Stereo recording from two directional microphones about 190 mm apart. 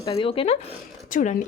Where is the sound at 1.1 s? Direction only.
40° left (ahead or behind).